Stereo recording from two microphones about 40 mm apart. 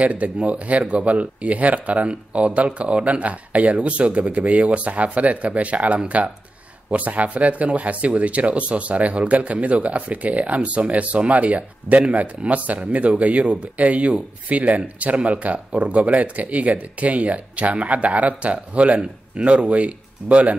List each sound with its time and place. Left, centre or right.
0.0 s speech: right